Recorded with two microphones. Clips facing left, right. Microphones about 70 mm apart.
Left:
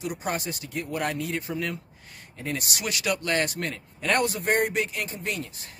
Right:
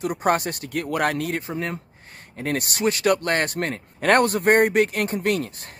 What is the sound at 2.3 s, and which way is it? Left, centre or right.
Speech, right.